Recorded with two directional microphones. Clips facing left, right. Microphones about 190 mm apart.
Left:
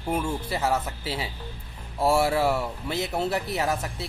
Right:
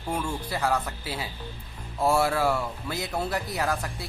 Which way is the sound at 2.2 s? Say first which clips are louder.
Left 1 dB; 25° left (ahead or behind).